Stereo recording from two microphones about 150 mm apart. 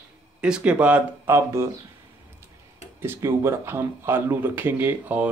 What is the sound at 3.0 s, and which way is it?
Speech, 15° right (ahead or behind).